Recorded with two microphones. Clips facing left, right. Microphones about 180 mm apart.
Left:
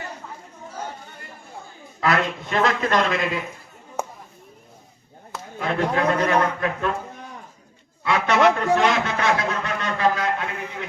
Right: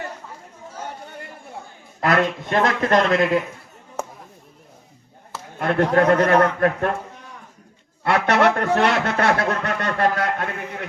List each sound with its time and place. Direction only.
2.0 s a man's voice: 50° right (ahead or behind)
5.5 s a man's voice: 60° right (ahead or behind)
8.0 s a man's voice: 60° right (ahead or behind)